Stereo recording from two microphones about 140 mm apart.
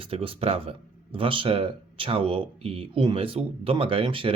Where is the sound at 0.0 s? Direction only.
40° right (ahead or behind).